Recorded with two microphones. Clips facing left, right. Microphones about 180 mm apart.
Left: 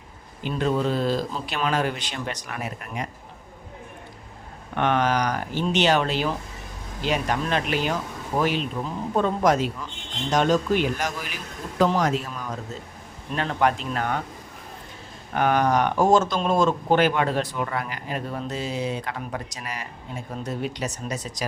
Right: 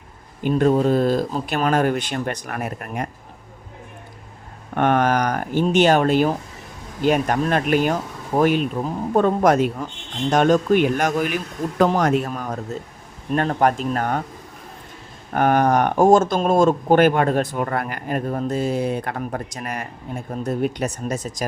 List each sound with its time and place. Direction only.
0.4 s speech: 45° right (ahead or behind)
4.7 s speech: 50° right (ahead or behind)
15.3 s speech: 45° right (ahead or behind)